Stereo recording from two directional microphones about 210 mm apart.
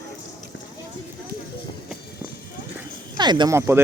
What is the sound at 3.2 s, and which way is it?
Speech, 20° right (ahead or behind).